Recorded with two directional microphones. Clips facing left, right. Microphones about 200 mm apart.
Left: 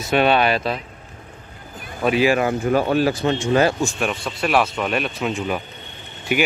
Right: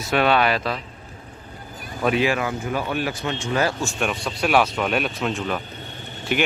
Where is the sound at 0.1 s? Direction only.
25° left (ahead or behind).